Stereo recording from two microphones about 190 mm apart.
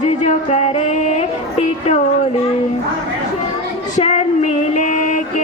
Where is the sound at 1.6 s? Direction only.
35° left (ahead or behind).